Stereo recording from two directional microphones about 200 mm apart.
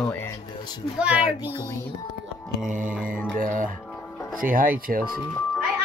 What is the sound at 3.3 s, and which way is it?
Speech, 40° right (ahead or behind).